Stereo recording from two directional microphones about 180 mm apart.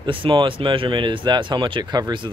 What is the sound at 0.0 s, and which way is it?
Speech, 30° right (ahead or behind).